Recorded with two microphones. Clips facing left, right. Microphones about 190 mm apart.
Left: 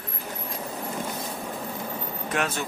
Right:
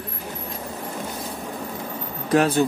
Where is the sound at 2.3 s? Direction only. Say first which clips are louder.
Right 11 dB; 35° right (ahead or behind).